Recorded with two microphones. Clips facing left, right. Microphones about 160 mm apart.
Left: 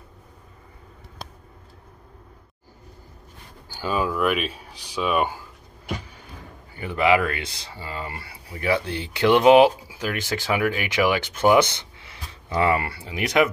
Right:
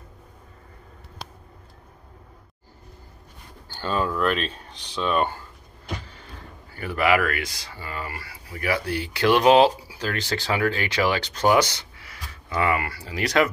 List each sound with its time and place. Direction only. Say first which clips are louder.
3.6 s speech: left 1 dB; 10° left (ahead or behind)
6.7 s speech: left 2 dB; 20° left (ahead or behind)